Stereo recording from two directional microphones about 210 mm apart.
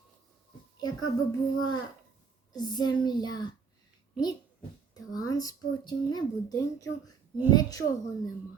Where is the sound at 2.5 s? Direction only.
20° left (ahead or behind).